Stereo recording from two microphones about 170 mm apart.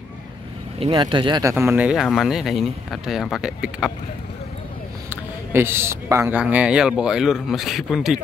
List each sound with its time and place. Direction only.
0.7 s speech: 30° right (ahead or behind)
1.5 s speech: 15° right (ahead or behind)
5.1 s speech: 15° right (ahead or behind)
6.4 s speech: 5° right (ahead or behind)